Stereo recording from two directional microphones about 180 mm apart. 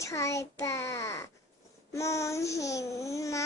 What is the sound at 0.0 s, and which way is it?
A child's voice, 15° left (ahead or behind).